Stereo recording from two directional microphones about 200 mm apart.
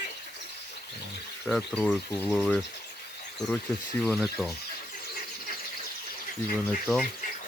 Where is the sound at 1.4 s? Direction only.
5° left (ahead or behind).